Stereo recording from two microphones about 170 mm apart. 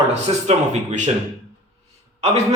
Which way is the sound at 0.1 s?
40° right (ahead or behind).